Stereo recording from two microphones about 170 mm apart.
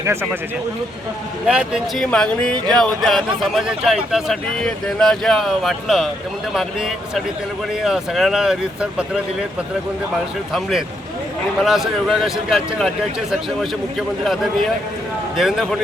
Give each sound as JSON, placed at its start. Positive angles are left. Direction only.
{"t": 0.0, "sound": "a man's voice", "side_deg": -15}
{"t": 1.5, "sound": "speech", "side_deg": -5}
{"t": 10.5, "sound": "speech", "side_deg": 0}
{"t": 15.4, "sound": "speech", "side_deg": 0}